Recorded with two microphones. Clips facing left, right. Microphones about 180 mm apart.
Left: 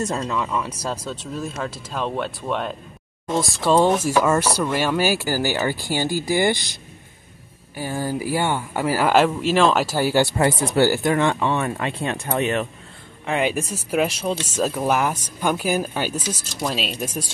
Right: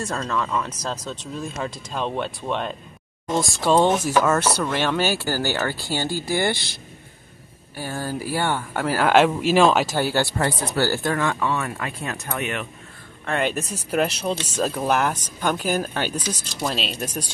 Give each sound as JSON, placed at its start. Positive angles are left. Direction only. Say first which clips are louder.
{"t": 0.0, "sound": "speech", "louder": "left 2 dB", "side_deg": 15}
{"t": 9.8, "sound": "speech", "louder": "left 3 dB", "side_deg": 10}
{"t": 13.2, "sound": "speech", "louder": "left 2 dB", "side_deg": 10}